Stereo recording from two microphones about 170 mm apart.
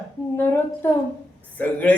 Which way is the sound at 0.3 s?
10° left (ahead or behind).